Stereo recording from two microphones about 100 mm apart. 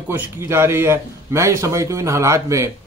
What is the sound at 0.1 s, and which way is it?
Speech, 25° right (ahead or behind).